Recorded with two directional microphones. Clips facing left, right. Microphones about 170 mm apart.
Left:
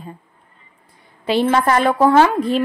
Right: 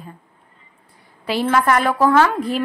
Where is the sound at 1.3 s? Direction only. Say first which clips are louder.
Left 2 dB; 25° left (ahead or behind).